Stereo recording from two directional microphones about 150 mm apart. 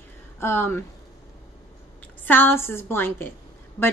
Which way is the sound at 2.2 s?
15° left (ahead or behind).